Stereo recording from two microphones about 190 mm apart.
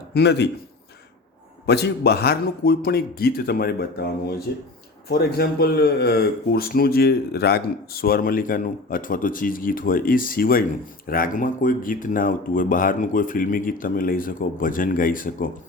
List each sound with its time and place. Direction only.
0.1 s a man's voice: 60° left (ahead or behind)
1.6 s speech: 60° left (ahead or behind)